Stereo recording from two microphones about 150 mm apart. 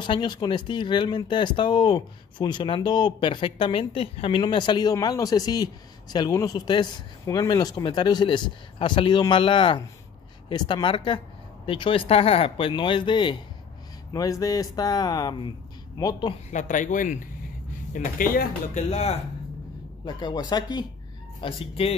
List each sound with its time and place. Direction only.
0.0 s speech: 30° left (ahead or behind)
16.4 s speech: 55° left (ahead or behind)
18.8 s speech: 45° left (ahead or behind)
20.1 s speech: 30° left (ahead or behind)